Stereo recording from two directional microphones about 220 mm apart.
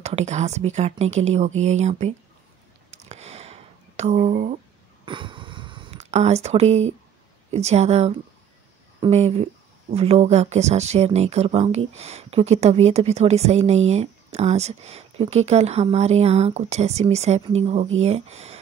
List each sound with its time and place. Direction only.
0.0 s speech: 30° right (ahead or behind)
2.9 s a sound: 30° right (ahead or behind)
7.5 s speech: 30° right (ahead or behind)